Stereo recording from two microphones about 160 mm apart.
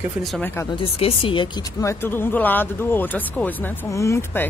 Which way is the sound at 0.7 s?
35° left (ahead or behind).